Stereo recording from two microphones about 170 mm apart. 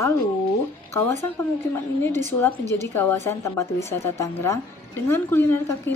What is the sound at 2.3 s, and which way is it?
A woman's voice, 10° left (ahead or behind).